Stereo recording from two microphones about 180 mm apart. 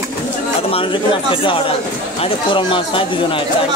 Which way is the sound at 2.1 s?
30° left (ahead or behind).